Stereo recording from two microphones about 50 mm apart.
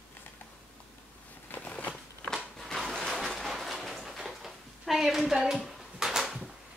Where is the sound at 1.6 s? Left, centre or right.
Left.